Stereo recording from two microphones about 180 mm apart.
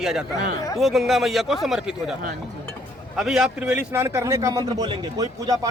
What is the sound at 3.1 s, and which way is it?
Speech, 5° right (ahead or behind).